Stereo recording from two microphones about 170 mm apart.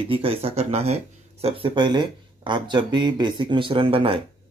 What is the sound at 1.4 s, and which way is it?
Speech, 30° right (ahead or behind).